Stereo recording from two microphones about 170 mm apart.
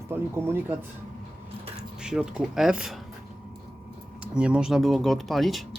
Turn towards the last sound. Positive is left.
turn(degrees=0)  # may be behind; listen again after turning